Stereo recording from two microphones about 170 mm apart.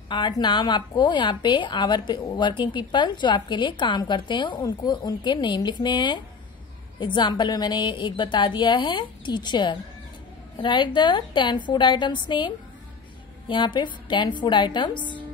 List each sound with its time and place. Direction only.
0.1 s a woman's voice: 25° left (ahead or behind)